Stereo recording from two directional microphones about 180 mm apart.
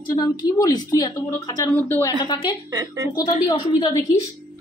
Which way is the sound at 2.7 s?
20° right (ahead or behind).